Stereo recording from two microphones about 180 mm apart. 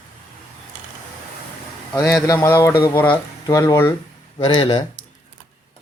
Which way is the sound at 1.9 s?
15° left (ahead or behind).